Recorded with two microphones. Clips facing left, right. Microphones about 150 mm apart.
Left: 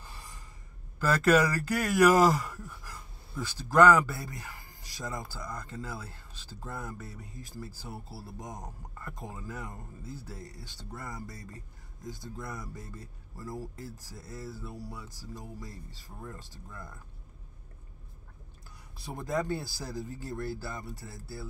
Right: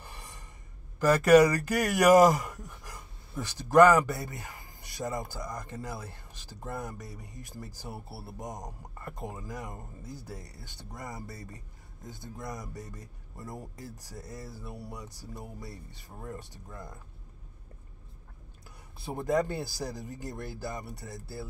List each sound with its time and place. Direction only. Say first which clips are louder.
0.0 s a sound: right 1 dB; 15° right (ahead or behind)
1.0 s speech: right 5 dB; 10° right (ahead or behind)
19.1 s speech: right 3 dB; 15° right (ahead or behind)